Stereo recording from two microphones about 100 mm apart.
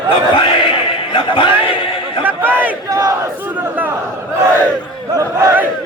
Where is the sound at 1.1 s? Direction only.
55° left (ahead or behind).